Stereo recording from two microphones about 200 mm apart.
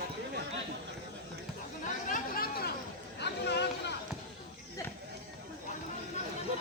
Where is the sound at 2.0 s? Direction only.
45° left (ahead or behind).